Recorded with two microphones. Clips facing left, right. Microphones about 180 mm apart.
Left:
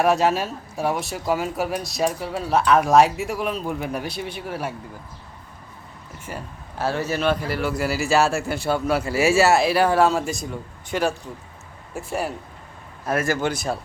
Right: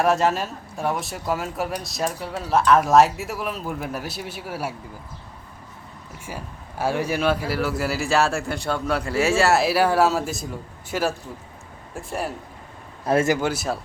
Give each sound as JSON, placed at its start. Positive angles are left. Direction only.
{"t": 0.0, "sound": "speech", "side_deg": 0}
{"t": 6.2, "sound": "speech", "side_deg": -10}
{"t": 13.1, "sound": "speech", "side_deg": -25}
{"t": 13.3, "sound": "speech", "side_deg": -5}